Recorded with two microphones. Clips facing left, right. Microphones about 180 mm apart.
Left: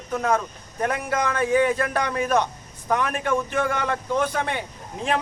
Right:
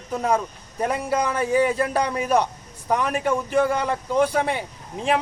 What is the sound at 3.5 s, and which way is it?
Speech, 35° right (ahead or behind).